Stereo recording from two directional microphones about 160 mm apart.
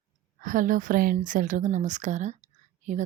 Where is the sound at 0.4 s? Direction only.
55° right (ahead or behind).